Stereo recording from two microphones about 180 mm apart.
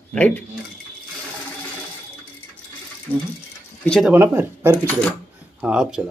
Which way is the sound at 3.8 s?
5° left (ahead or behind).